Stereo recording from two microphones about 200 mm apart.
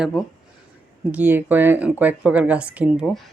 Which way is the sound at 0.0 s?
Centre (ahead or behind).